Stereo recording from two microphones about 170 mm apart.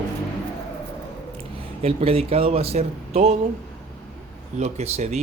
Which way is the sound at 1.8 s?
35° right (ahead or behind).